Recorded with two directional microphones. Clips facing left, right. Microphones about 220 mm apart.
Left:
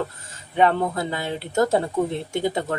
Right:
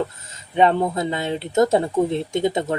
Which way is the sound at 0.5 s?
20° right (ahead or behind).